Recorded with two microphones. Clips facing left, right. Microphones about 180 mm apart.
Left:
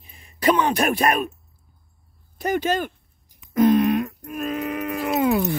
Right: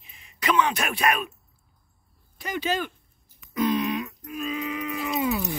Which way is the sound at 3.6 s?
50° left (ahead or behind).